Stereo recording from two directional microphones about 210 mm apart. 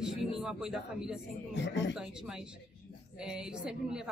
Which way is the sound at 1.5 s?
55° left (ahead or behind).